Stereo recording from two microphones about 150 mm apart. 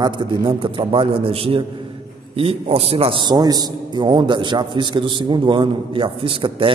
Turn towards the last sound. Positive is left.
turn(degrees=-35)  # may be behind; listen again after turning